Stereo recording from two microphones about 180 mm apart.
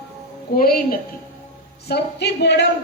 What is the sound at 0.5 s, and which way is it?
Speech, 55° left (ahead or behind).